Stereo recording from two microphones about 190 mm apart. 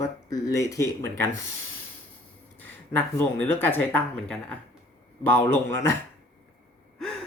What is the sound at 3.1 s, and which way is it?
Speech, 10° left (ahead or behind).